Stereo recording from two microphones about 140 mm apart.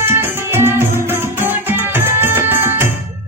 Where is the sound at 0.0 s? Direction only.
15° right (ahead or behind).